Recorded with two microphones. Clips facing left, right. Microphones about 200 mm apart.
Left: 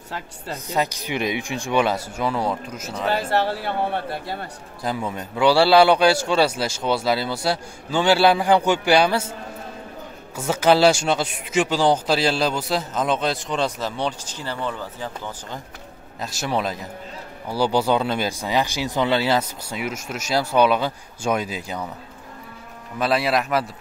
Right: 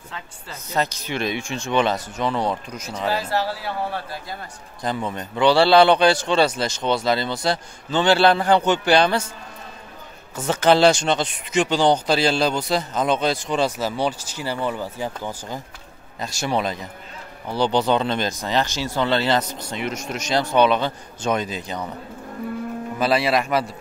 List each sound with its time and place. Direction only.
0.7 s a man's voice: 15° left (ahead or behind)
3.1 s speech: 55° left (ahead or behind)
4.8 s a man's voice: 5° left (ahead or behind)
10.3 s speech: 10° left (ahead or behind); by 15.6 s 10° right (ahead or behind)
16.2 s a man's voice: 5° left (ahead or behind)
22.9 s speech: centre (ahead or behind)